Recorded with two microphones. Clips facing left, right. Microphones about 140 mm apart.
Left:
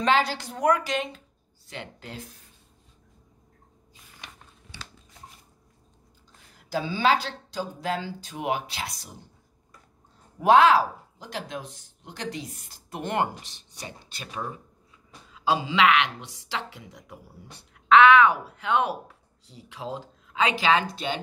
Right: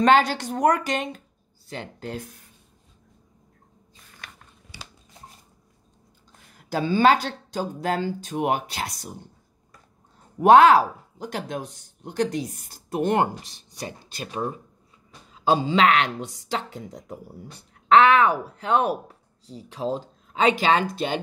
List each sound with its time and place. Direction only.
0.0 s speech: 50° right (ahead or behind)
6.7 s speech: 55° right (ahead or behind)
10.4 s speech: 50° right (ahead or behind)